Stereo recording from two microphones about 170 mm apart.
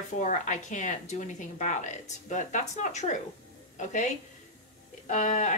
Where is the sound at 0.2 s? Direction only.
45° left (ahead or behind).